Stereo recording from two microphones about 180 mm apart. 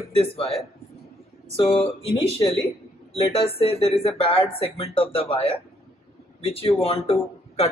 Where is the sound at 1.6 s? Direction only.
30° left (ahead or behind).